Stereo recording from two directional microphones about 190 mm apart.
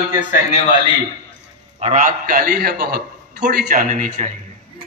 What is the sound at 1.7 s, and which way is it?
A man's voice, 35° right (ahead or behind).